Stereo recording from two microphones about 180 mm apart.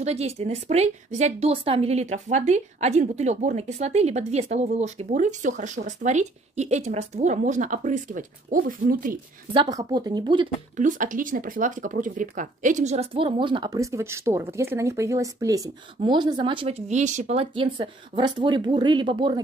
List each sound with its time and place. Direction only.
0.0 s speech: 35° right (ahead or behind); by 9.2 s 50° right (ahead or behind)
9.5 s speech: 25° right (ahead or behind)
10.8 s speech: 45° right (ahead or behind); by 19.4 s 25° right (ahead or behind)